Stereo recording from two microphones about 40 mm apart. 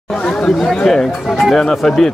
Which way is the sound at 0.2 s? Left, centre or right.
Centre.